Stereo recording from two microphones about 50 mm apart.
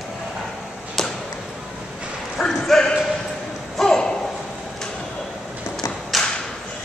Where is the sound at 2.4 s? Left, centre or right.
Centre.